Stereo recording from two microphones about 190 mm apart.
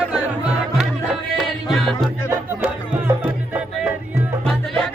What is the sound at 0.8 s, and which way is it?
Music, centre (ahead or behind).